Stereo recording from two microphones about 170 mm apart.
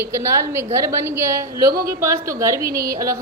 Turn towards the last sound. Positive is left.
turn(degrees=-20)  # may be behind; listen again after turning